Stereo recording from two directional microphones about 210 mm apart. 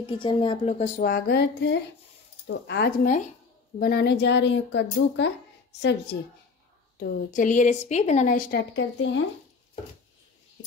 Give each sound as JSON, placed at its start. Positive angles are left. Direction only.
{"t": 0.0, "sound": "speech", "side_deg": 25}
{"t": 0.9, "sound": "music", "side_deg": 45}
{"t": 3.8, "sound": "speech", "side_deg": 50}
{"t": 7.0, "sound": "a woman's voice", "side_deg": 40}